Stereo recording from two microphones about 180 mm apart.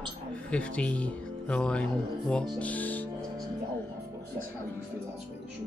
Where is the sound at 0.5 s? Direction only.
5° left (ahead or behind).